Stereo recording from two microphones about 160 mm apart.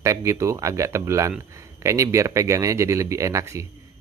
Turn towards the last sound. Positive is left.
turn(degrees=-20)  # may be behind; listen again after turning